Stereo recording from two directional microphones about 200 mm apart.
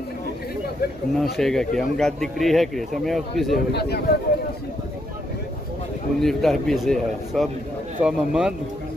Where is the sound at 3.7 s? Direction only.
55° left (ahead or behind).